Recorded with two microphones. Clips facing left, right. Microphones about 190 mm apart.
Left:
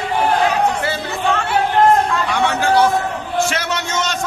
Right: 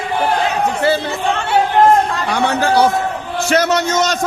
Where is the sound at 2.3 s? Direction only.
40° right (ahead or behind).